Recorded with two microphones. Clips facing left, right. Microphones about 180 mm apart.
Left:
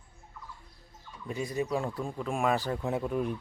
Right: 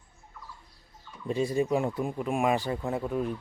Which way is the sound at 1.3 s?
25° right (ahead or behind).